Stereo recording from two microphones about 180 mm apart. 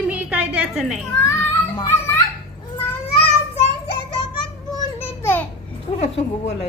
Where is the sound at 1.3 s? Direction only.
25° left (ahead or behind).